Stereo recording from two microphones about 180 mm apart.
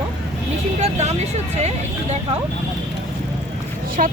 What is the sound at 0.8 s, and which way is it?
Speech, 35° right (ahead or behind).